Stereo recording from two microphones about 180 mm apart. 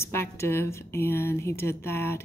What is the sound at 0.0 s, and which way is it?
Speech, 15° left (ahead or behind).